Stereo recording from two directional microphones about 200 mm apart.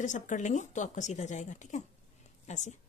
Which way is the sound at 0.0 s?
40° left (ahead or behind).